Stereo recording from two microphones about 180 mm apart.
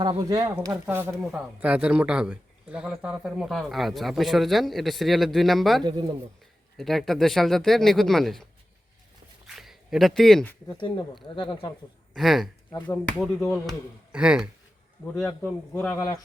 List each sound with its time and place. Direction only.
0.0 s a man's voice: 20° right (ahead or behind); by 5.8 s centre (ahead or behind)
5.8 s speech: 25° right (ahead or behind)
6.7 s a man's voice: centre (ahead or behind)
9.5 s a sound: centre (ahead or behind)
10.8 s speech: 25° left (ahead or behind)
12.1 s a man's voice: centre (ahead or behind)
15.3 s a man's voice: 10° left (ahead or behind)